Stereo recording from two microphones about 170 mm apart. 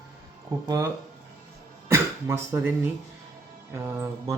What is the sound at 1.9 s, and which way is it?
Speech, 15° right (ahead or behind).